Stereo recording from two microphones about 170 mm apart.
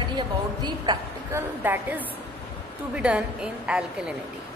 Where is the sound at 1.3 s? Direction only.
10° right (ahead or behind).